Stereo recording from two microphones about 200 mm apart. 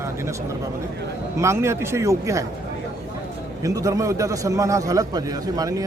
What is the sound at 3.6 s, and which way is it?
A man's voice, 15° right (ahead or behind).